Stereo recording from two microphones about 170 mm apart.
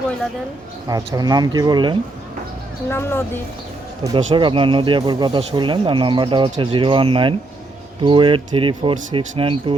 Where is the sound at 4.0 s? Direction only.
30° right (ahead or behind).